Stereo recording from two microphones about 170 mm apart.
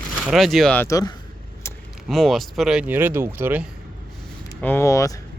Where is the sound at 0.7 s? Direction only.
20° left (ahead or behind).